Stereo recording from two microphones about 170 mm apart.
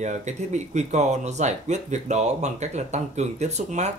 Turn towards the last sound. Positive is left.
turn(degrees=-40)  # may be behind; listen again after turning